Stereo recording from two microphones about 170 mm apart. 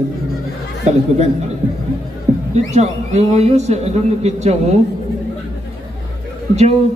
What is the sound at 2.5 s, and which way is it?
A man's voice, 40° right (ahead or behind).